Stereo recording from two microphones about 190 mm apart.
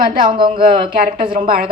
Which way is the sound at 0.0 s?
45° right (ahead or behind).